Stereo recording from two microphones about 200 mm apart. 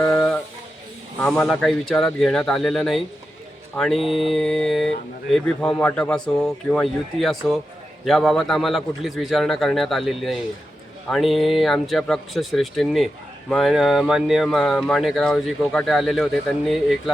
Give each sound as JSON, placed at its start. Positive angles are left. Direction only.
{"t": 0.0, "sound": "music", "side_deg": 5}
{"t": 1.2, "sound": "speech", "side_deg": 0}